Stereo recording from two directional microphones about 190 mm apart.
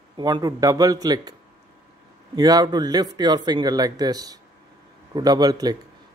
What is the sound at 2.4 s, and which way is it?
Speech, 20° right (ahead or behind).